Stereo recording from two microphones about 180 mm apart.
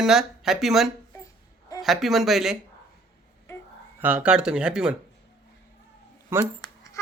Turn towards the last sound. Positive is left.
turn(degrees=15)  # may be behind; listen again after turning